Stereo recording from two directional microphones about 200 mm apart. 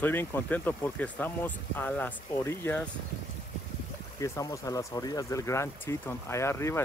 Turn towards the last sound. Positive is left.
turn(degrees=15)  # may be behind; listen again after turning